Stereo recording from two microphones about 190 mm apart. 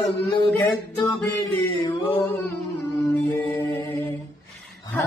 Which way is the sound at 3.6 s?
15° left (ahead or behind).